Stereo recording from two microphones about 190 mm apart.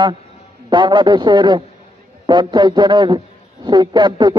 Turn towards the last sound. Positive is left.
turn(degrees=-25)  # may be behind; listen again after turning